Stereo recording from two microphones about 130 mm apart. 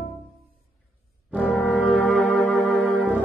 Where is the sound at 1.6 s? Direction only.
5° left (ahead or behind).